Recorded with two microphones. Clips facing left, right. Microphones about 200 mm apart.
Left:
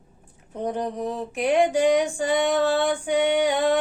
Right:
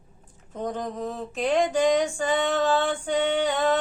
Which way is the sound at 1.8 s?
10° left (ahead or behind).